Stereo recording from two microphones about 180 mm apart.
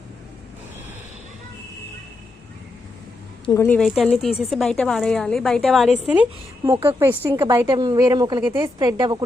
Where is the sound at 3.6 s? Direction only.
5° left (ahead or behind).